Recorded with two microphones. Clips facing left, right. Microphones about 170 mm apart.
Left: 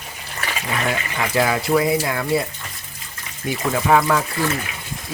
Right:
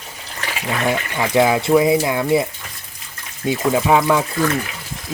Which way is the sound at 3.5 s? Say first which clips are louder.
Right 2 dB; 20° right (ahead or behind).